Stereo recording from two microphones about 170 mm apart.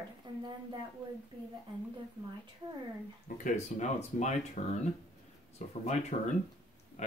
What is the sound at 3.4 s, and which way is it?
Speech, 50° left (ahead or behind).